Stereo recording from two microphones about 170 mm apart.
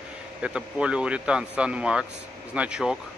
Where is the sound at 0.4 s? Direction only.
5° right (ahead or behind).